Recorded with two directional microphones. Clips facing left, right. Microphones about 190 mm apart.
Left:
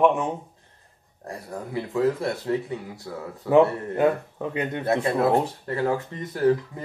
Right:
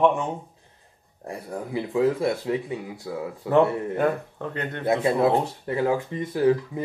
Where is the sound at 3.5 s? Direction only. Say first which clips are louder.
Left 2 dB; 10° left (ahead or behind).